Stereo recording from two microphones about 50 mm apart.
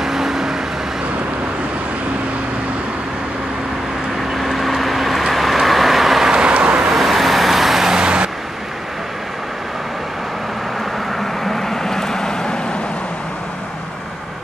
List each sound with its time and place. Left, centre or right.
0.0 s vehicle: centre
4.4 s vehicle: centre
6.3 s vehicle: centre
6.9 s vehicle: centre
11.1 s vehicle: centre